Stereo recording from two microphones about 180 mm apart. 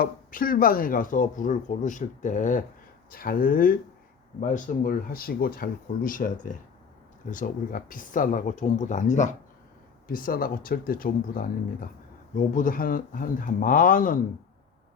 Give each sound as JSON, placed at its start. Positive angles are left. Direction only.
{"t": 0.0, "sound": "speech", "side_deg": 50}